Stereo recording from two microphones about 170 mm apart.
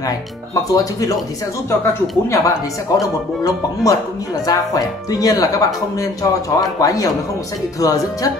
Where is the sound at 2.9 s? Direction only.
20° left (ahead or behind).